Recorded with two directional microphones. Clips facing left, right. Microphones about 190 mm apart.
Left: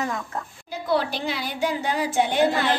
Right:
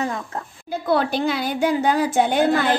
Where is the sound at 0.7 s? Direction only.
50° right (ahead or behind).